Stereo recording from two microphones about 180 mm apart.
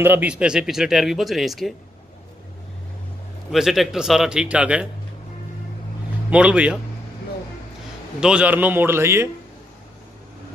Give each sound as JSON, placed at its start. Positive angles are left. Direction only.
{"t": 0.0, "sound": "speech", "side_deg": -10}
{"t": 3.5, "sound": "speech", "side_deg": 0}
{"t": 6.3, "sound": "a man's voice", "side_deg": -5}
{"t": 8.2, "sound": "a man's voice", "side_deg": -5}